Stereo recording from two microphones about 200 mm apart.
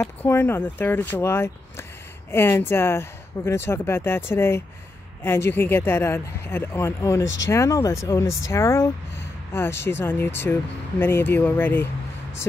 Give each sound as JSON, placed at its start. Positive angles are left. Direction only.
{"t": 0.0, "sound": "speech", "side_deg": 10}